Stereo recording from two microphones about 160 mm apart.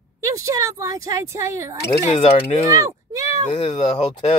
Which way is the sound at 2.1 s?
40° left (ahead or behind).